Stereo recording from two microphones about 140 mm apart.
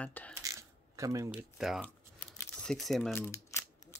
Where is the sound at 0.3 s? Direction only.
25° right (ahead or behind).